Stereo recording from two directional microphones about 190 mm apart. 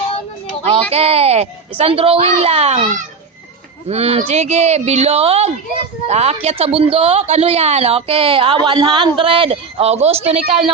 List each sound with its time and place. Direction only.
0.6 s a woman's voice: 30° right (ahead or behind)